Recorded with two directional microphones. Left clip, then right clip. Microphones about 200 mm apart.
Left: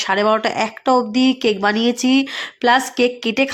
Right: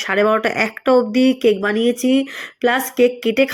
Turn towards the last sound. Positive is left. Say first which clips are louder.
# right 2 dB
turn(degrees=5)  # may be behind; listen again after turning